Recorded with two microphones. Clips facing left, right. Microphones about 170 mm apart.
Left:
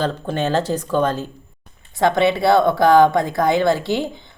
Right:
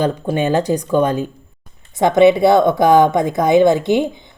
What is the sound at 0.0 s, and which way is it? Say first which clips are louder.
Speech: right 4 dB; 15° right (ahead or behind).